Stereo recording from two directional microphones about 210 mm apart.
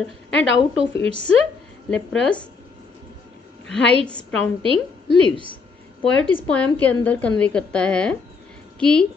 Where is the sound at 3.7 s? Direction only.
5° left (ahead or behind).